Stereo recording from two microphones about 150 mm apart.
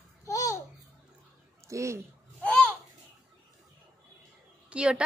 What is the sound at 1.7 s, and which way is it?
Speech, 20° right (ahead or behind).